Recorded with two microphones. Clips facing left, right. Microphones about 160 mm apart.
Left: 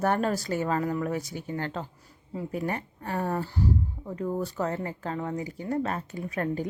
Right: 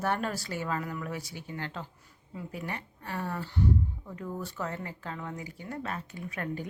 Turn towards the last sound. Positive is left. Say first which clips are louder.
# left 6 dB
turn(degrees=40)  # may be behind; listen again after turning